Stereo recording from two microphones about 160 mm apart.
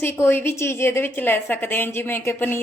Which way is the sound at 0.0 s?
15° left (ahead or behind).